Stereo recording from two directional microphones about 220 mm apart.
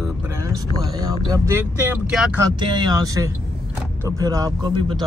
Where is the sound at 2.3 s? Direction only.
20° right (ahead or behind).